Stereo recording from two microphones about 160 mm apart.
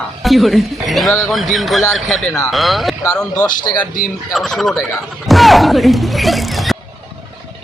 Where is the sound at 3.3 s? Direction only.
25° left (ahead or behind).